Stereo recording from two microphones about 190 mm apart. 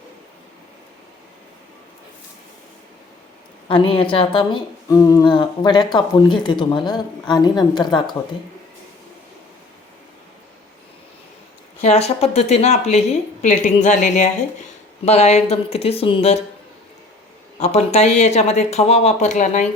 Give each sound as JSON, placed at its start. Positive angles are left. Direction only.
{"t": 3.7, "sound": "speech", "side_deg": 25}
{"t": 11.8, "sound": "a woman's voice", "side_deg": 35}
{"t": 17.6, "sound": "a woman's voice", "side_deg": 35}